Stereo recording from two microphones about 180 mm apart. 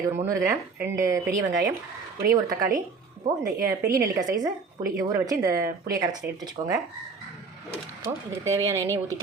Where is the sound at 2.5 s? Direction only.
55° right (ahead or behind).